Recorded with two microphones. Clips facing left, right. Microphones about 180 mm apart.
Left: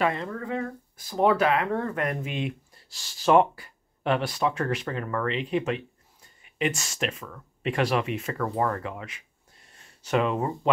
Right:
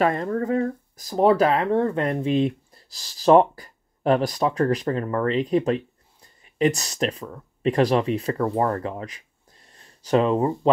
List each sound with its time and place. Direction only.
0.0 s speech: 45° right (ahead or behind)